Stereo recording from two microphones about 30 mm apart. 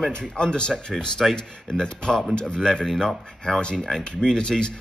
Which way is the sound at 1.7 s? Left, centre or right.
Left.